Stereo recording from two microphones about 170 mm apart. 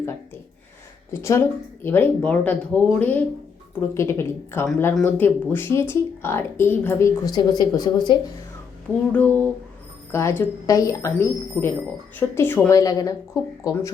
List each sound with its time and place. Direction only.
1.1 s speech: 15° left (ahead or behind)
9.1 s speech: 10° left (ahead or behind)